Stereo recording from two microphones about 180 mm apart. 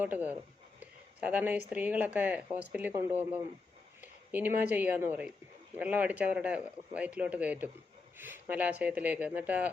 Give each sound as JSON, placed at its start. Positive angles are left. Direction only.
{"t": 0.0, "sound": "speech", "side_deg": -10}